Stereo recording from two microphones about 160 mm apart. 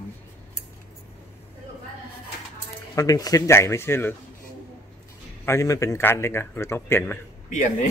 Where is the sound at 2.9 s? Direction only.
25° left (ahead or behind).